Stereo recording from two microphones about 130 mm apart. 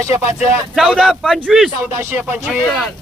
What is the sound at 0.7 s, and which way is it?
Speech, centre (ahead or behind).